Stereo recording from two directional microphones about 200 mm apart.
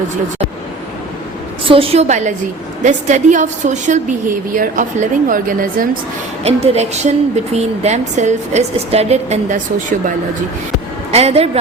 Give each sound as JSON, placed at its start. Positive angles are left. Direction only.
{"t": 1.6, "sound": "a woman's voice", "side_deg": -25}
{"t": 6.4, "sound": "a woman's voice", "side_deg": -35}
{"t": 11.1, "sound": "a woman's voice", "side_deg": -30}